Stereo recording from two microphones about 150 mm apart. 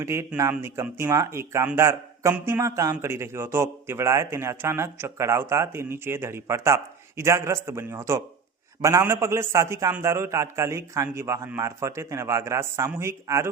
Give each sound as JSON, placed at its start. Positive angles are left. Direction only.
{"t": 0.0, "sound": "a man's voice", "side_deg": -15}